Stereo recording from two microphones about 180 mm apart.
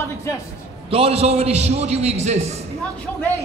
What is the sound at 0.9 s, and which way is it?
A man's voice, 35° right (ahead or behind).